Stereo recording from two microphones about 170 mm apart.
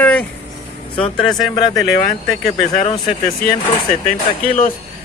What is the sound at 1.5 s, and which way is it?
Speech, 20° left (ahead or behind).